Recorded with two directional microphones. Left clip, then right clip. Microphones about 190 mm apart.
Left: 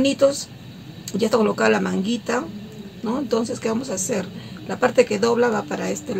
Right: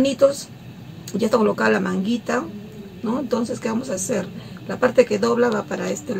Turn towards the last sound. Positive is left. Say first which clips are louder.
# even
turn(degrees=20)  # may be behind; listen again after turning